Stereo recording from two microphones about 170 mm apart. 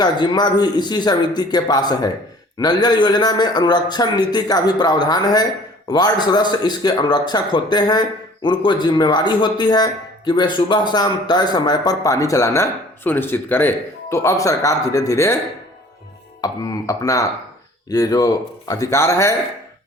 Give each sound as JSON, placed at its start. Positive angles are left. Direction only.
{"t": 0.0, "sound": "a man's voice", "side_deg": 25}
{"t": 16.4, "sound": "a man's voice", "side_deg": 20}